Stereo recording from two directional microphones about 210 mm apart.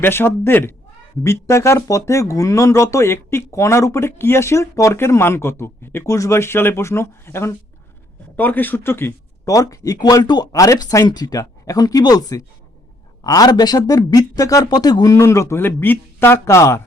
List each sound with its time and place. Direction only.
0.0 s speech: 10° left (ahead or behind)